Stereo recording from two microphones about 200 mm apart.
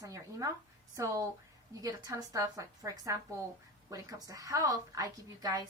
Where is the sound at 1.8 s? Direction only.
15° right (ahead or behind).